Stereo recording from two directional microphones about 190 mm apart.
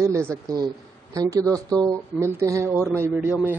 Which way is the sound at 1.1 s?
20° right (ahead or behind).